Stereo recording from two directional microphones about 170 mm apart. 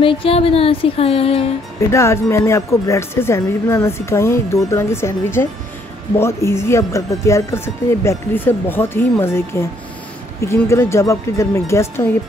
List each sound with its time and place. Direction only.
0.0 s music: 30° left (ahead or behind)
1.9 s speech: 15° left (ahead or behind)